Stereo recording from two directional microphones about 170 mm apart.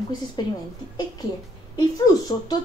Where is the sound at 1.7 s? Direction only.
25° left (ahead or behind).